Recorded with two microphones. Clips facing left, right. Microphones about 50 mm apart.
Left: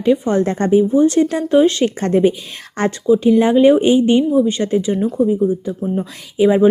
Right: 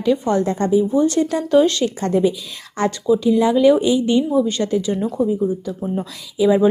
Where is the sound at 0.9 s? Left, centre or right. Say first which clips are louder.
Left 4 dB; left.